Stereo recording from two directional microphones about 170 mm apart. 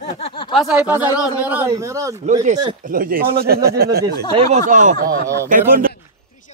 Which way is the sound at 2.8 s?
55° right (ahead or behind).